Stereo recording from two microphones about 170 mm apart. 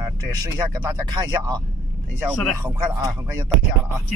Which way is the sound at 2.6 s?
20° right (ahead or behind).